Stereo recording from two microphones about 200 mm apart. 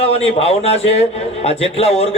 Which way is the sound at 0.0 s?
30° left (ahead or behind).